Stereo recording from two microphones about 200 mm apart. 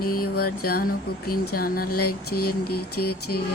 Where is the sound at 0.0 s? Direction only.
50° left (ahead or behind).